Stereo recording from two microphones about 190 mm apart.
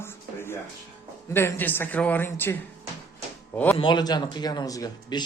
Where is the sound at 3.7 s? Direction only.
25° left (ahead or behind).